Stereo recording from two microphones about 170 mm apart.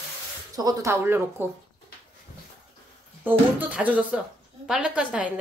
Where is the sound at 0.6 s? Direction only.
20° right (ahead or behind).